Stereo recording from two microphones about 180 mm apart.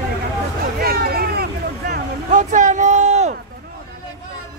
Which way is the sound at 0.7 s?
55° right (ahead or behind).